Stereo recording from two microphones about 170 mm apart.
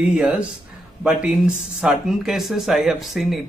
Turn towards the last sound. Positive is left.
turn(degrees=0)  # may be behind; listen again after turning